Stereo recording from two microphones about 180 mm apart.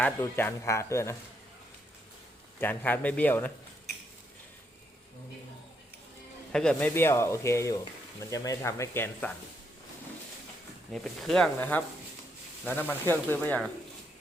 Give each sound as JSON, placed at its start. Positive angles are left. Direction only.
{"t": 0.0, "sound": "speech", "side_deg": 10}
{"t": 2.6, "sound": "speech", "side_deg": 10}
{"t": 6.5, "sound": "speech", "side_deg": 5}
{"t": 10.9, "sound": "speech", "side_deg": 0}